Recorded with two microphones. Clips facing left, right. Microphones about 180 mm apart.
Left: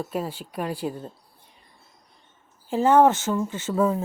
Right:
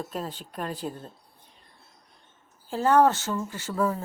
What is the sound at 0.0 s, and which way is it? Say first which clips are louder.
Speech: left 4 dB; 10° left (ahead or behind).